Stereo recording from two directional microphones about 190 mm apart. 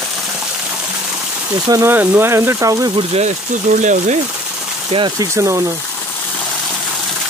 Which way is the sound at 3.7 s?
40° right (ahead or behind).